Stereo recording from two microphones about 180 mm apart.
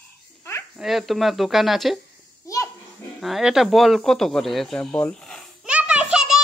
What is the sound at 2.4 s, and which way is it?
Children playing, 20° left (ahead or behind).